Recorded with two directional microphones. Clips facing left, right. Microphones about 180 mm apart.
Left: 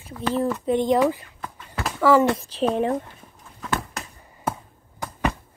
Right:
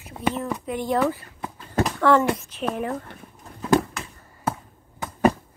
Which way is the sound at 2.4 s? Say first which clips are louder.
Left 5 dB; 35° left (ahead or behind).